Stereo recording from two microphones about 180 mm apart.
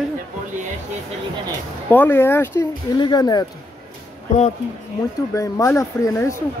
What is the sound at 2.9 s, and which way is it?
Speech, 25° left (ahead or behind).